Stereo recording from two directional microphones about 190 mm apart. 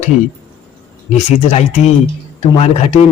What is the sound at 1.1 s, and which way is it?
A man's voice, 35° left (ahead or behind).